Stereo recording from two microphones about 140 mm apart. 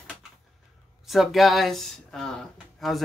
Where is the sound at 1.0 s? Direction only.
Centre (ahead or behind).